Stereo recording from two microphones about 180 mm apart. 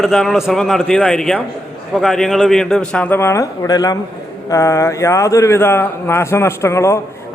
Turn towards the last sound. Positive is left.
turn(degrees=15)  # may be behind; listen again after turning